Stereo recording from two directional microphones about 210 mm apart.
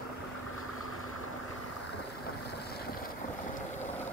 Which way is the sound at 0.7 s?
85° left.